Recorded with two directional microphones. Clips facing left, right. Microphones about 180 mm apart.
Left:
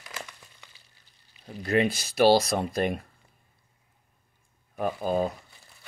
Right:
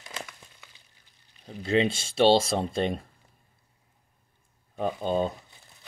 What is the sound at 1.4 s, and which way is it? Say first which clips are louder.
Speech: even; 25° right (ahead or behind).